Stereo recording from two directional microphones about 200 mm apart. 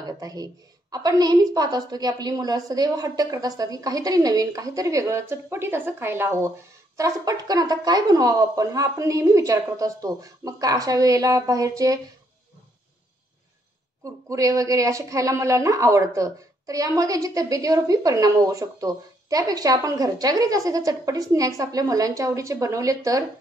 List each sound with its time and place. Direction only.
0.2 s a woman's voice: 20° right (ahead or behind)
14.0 s a woman's voice: 15° right (ahead or behind)